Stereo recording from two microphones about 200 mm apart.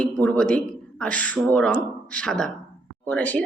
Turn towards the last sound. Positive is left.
turn(degrees=5)  # may be behind; listen again after turning